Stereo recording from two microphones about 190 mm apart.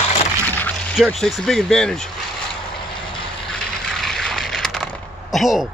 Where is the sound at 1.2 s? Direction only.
Centre (ahead or behind).